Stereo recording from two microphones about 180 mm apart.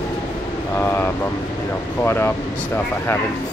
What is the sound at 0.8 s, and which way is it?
Speech, 10° left (ahead or behind).